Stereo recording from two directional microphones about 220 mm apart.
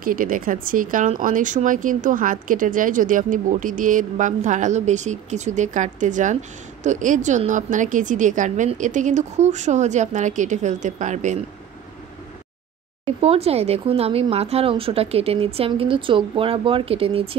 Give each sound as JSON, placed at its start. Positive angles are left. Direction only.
{"t": 0.0, "sound": "speech", "side_deg": -40}
{"t": 13.0, "sound": "speech", "side_deg": -30}